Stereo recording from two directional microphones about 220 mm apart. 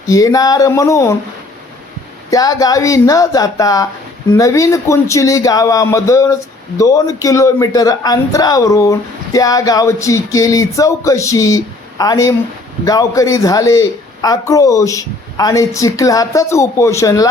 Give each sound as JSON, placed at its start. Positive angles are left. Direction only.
{"t": 0.1, "sound": "a man's voice", "side_deg": 15}
{"t": 2.3, "sound": "a man's voice", "side_deg": 15}